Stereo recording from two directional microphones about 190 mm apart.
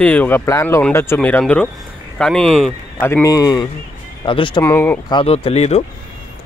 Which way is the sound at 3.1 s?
15° left (ahead or behind).